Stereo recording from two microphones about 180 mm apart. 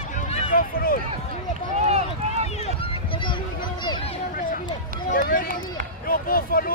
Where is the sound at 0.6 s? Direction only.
55° left (ahead or behind).